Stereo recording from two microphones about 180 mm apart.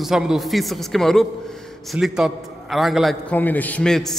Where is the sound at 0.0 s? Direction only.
Centre (ahead or behind).